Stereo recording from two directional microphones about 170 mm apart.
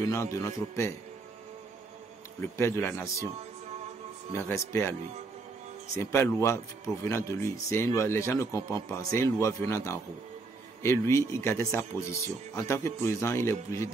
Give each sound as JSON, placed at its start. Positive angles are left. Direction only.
{"t": 0.0, "sound": "speech", "side_deg": 20}
{"t": 2.5, "sound": "speech", "side_deg": 15}
{"t": 4.3, "sound": "speech", "side_deg": 15}
{"t": 5.9, "sound": "speech", "side_deg": 15}